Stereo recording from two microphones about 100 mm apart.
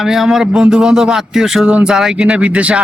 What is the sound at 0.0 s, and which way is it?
Speech, 5° right (ahead or behind).